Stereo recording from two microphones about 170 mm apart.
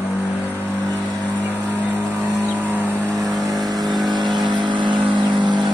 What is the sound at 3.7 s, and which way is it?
Vehicle, 25° right (ahead or behind).